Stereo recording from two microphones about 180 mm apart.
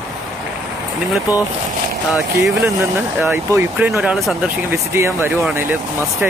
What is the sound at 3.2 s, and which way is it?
Speech, 15° right (ahead or behind).